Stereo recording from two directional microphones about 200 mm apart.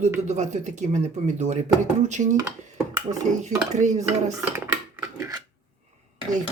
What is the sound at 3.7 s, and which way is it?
Speech, 35° right (ahead or behind).